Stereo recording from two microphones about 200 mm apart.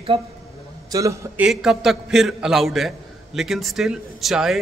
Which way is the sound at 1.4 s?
Centre (ahead or behind).